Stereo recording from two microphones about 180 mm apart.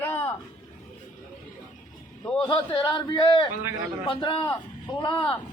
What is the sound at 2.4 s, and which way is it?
A man's voice, 25° left (ahead or behind).